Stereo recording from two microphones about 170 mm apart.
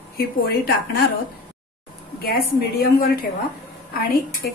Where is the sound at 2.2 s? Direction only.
60° left (ahead or behind).